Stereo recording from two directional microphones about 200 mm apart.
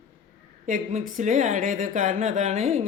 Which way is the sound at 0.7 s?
40° right (ahead or behind).